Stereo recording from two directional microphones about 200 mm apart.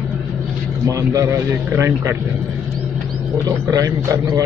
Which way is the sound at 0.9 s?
15° right (ahead or behind).